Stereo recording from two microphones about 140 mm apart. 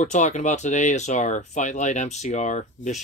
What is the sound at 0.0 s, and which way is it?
Speech, 60° left (ahead or behind).